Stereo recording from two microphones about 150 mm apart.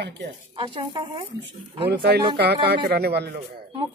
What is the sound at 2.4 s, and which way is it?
Speech, 90° right.